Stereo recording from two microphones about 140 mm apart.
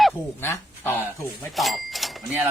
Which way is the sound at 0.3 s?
15° left (ahead or behind).